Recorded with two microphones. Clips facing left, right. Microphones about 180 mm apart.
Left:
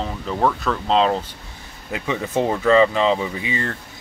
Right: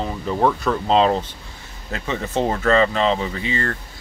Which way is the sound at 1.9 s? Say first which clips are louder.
Left 1 dB; 10° left (ahead or behind).